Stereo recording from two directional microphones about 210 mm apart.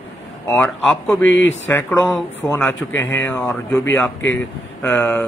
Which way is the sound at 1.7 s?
10° left (ahead or behind).